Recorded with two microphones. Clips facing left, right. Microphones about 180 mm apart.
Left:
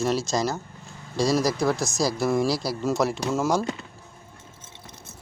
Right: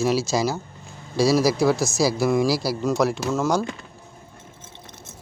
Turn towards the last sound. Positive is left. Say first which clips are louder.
# right 2 dB
turn(degrees=5)  # may be behind; listen again after turning